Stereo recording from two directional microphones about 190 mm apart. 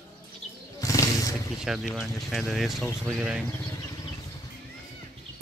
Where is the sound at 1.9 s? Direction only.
Centre (ahead or behind).